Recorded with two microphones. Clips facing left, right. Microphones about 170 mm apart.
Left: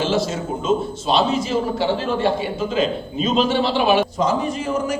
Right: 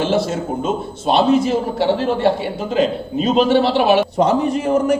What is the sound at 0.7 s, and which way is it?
A man's voice, 60° right (ahead or behind).